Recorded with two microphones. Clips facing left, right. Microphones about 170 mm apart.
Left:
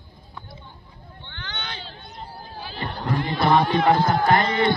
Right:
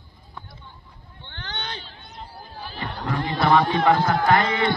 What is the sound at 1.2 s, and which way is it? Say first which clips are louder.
Hubbub: right 2 dB; 40° right (ahead or behind).